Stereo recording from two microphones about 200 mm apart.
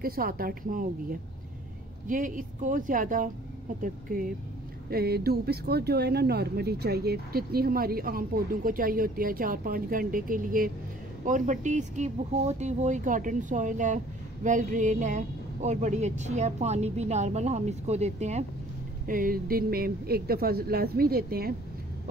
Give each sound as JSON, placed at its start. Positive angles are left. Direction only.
{"t": 0.0, "sound": "speech", "side_deg": -45}
{"t": 2.0, "sound": "speech", "side_deg": -40}
{"t": 4.8, "sound": "speech", "side_deg": -50}
{"t": 19.0, "sound": "speech", "side_deg": -45}